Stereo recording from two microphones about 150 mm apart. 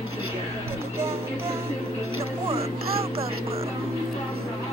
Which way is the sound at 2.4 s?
40° right (ahead or behind).